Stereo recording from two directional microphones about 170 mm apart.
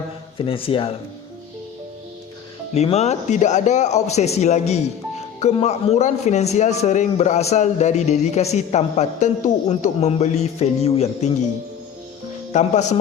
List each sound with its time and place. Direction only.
0.3 s a man's voice: 30° left (ahead or behind)
2.7 s a man's voice: 40° left (ahead or behind)
12.5 s speech: 45° left (ahead or behind)